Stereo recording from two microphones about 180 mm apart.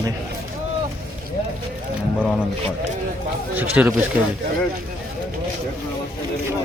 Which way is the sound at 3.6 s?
10° right (ahead or behind).